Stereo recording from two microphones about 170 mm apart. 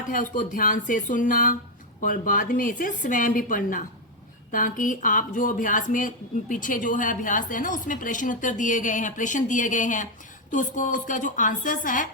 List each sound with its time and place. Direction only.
0.1 s speech: 50° left (ahead or behind)